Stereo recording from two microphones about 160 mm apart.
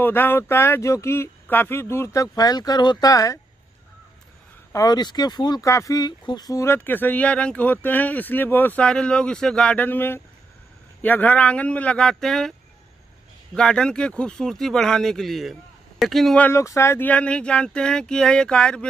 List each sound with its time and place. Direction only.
0.0 s speech: 10° left (ahead or behind)
4.7 s speech: 25° left (ahead or behind); by 12.5 s 5° left (ahead or behind)
13.6 s speech: 5° left (ahead or behind)
16.4 s speech: 15° left (ahead or behind)